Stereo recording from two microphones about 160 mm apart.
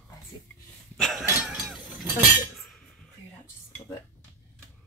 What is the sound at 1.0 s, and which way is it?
Chink, centre (ahead or behind).